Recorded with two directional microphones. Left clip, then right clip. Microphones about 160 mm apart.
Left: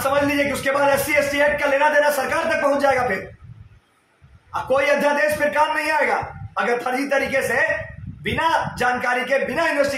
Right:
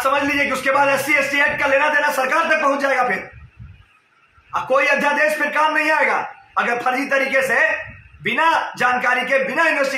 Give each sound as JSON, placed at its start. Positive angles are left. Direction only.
{"t": 0.0, "sound": "a man's voice", "side_deg": 10}
{"t": 4.5, "sound": "a man's voice", "side_deg": 10}